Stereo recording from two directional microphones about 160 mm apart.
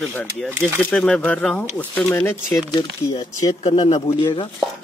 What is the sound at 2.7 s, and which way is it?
Speech, 25° left (ahead or behind).